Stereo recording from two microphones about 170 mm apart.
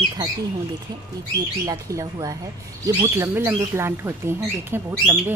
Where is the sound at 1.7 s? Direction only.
20° right (ahead or behind).